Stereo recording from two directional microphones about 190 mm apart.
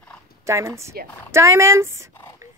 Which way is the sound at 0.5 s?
15° right (ahead or behind).